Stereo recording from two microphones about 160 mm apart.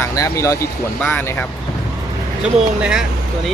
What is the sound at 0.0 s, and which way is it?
Speech, 20° left (ahead or behind).